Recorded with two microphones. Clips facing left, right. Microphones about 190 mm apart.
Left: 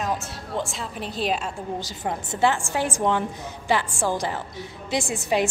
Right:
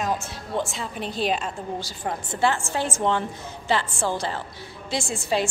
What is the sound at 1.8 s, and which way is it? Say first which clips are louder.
A woman's voice: left 1 dB; 20° left (ahead or behind).